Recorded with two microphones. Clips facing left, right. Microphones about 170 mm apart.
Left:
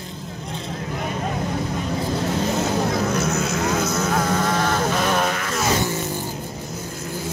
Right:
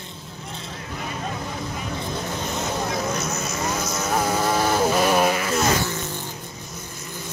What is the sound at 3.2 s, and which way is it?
Vehicle, 65° left (ahead or behind).